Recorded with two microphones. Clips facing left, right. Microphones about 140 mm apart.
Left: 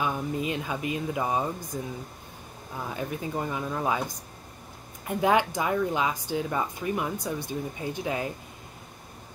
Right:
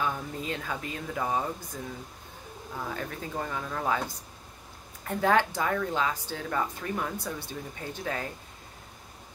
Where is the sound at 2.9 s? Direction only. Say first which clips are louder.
Left 6 dB; 15° left (ahead or behind).